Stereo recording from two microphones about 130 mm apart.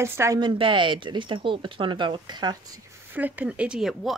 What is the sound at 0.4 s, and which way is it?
Speech, 40° right (ahead or behind).